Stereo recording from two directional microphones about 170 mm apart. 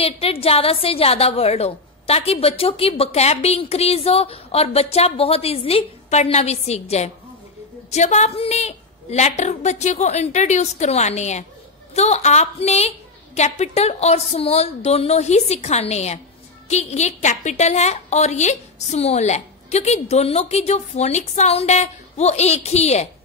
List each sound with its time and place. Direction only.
0.0 s a woman's voice: 35° left (ahead or behind)